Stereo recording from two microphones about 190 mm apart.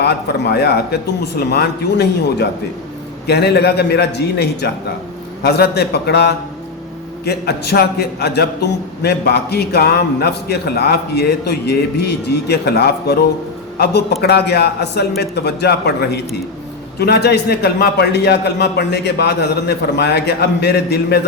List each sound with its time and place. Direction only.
0.0 s a man's voice: 60° left (ahead or behind)